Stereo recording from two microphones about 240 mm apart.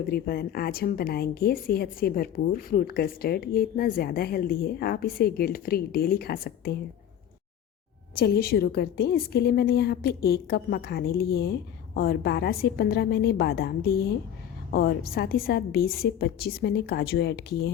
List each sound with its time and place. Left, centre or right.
0.0 s a woman's voice: left
8.2 s a woman's voice: left